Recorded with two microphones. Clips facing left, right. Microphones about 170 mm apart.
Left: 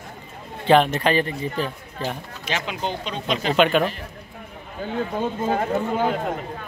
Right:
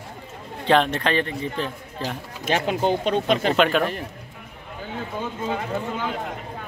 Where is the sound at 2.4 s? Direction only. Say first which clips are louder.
Right 6 dB; 50° right (ahead or behind).